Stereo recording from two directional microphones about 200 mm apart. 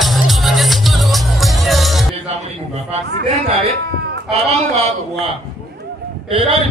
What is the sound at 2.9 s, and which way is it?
Chatter, 35° right (ahead or behind).